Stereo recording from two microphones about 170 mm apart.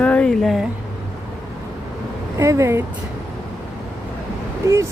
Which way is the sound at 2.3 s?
15° right (ahead or behind).